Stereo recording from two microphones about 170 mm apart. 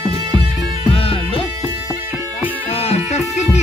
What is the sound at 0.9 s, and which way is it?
Music, 30° left (ahead or behind).